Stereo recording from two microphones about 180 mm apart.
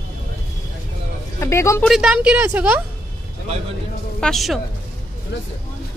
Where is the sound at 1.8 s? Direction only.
5° right (ahead or behind).